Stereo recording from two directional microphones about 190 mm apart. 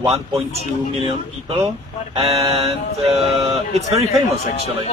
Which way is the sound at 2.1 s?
30° right (ahead or behind).